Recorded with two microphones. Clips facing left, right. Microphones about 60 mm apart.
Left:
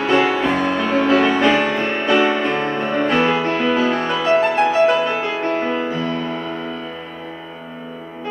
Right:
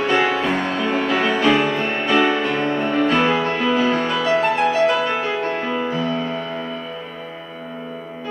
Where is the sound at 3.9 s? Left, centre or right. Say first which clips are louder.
Left 2 dB; centre.